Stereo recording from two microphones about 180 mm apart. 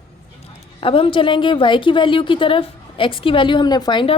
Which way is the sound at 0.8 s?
30° left (ahead or behind).